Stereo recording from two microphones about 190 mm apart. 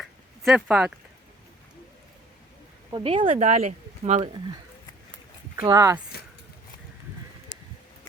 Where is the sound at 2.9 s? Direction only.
30° right (ahead or behind).